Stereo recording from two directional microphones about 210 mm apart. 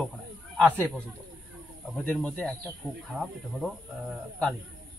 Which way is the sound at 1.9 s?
5° left (ahead or behind).